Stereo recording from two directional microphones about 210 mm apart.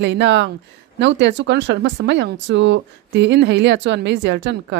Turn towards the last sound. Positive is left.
turn(degrees=-55)  # may be behind; listen again after turning